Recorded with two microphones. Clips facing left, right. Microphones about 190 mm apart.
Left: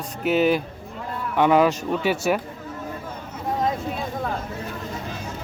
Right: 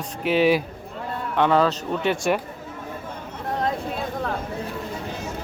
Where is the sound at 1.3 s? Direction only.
10° left (ahead or behind).